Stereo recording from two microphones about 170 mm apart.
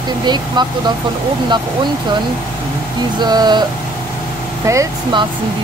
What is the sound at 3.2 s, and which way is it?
Speech, 25° right (ahead or behind).